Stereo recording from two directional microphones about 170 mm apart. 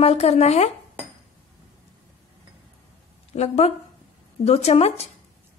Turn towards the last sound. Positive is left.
turn(degrees=35)  # may be behind; listen again after turning